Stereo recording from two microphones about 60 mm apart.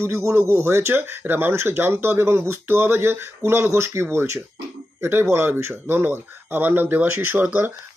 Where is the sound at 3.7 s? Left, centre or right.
Right.